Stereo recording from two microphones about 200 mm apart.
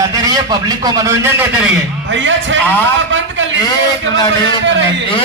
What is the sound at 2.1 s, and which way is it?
Music, 70° right (ahead or behind).